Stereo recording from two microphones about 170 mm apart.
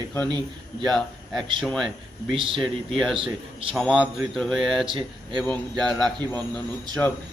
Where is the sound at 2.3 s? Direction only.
30° right (ahead or behind).